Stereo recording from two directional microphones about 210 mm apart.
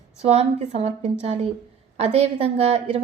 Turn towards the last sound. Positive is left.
turn(degrees=-30)  # may be behind; listen again after turning